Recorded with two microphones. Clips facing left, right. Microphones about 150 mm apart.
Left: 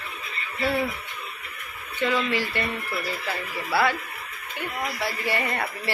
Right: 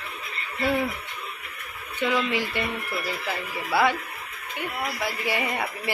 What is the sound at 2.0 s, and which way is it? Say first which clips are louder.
Speech: even; 15° right (ahead or behind).